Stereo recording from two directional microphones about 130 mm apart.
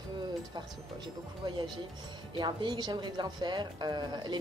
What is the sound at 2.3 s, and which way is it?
Speech, 35° right (ahead or behind).